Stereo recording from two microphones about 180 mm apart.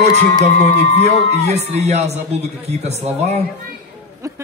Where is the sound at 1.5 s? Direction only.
35° right (ahead or behind).